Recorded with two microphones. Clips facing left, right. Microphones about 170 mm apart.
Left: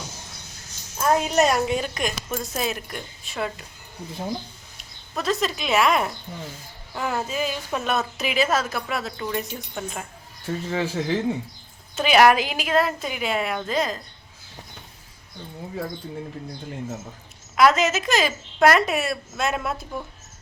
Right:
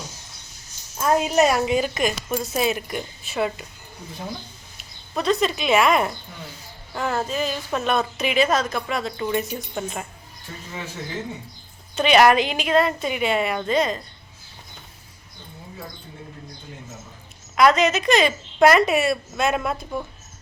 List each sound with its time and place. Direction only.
0.9 s a woman's voice: centre (ahead or behind)
4.8 s a woman's voice: centre (ahead or behind)
10.7 s speech: 90° left
11.9 s a woman's voice: centre (ahead or behind)
17.5 s a woman's voice: 5° left (ahead or behind)